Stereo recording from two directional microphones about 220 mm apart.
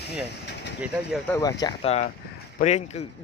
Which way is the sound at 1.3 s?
15° left (ahead or behind).